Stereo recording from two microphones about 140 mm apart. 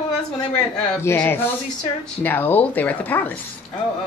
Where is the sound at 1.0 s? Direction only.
15° left (ahead or behind).